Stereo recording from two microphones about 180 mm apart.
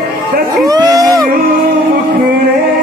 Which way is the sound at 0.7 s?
20° right (ahead or behind).